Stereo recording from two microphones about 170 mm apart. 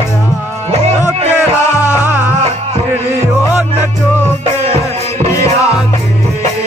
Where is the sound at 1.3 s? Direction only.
15° left (ahead or behind).